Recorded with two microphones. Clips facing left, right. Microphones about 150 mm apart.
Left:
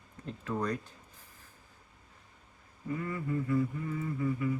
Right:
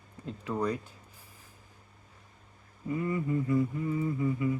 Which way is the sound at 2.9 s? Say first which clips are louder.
Right 5 dB; 20° right (ahead or behind).